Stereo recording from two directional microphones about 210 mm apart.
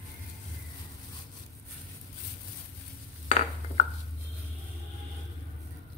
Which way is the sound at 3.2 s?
30° left (ahead or behind).